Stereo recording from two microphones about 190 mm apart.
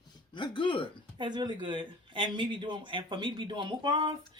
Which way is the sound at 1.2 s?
20° right (ahead or behind).